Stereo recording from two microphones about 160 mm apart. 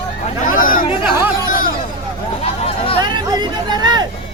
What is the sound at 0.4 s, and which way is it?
Chatter, 60° left (ahead or behind).